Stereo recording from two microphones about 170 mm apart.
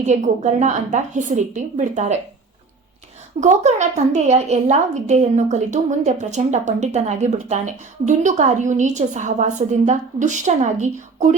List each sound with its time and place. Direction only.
0.0 s a woman's voice: 45° right (ahead or behind)
3.4 s a woman's voice: 45° right (ahead or behind)